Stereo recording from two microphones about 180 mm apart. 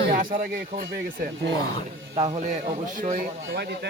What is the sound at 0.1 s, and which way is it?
A man's voice, 50° right (ahead or behind).